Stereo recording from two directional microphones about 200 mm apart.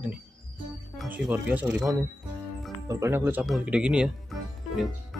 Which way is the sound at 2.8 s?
15° right (ahead or behind).